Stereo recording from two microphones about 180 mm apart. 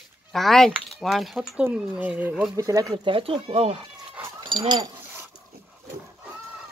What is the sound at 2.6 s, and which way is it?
Speech, 20° right (ahead or behind).